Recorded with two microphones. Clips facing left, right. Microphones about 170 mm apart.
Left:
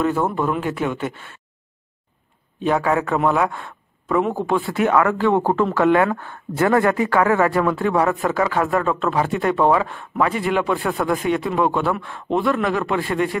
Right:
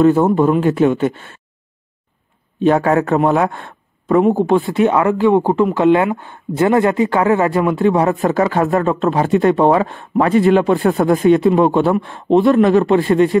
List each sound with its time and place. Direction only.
0.0 s speech: 25° right (ahead or behind)
2.6 s speech: 30° right (ahead or behind)
2.9 s speech: 40° right (ahead or behind)
3.2 s speech: 30° right (ahead or behind)